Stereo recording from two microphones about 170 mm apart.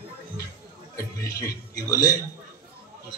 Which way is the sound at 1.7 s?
20° left (ahead or behind).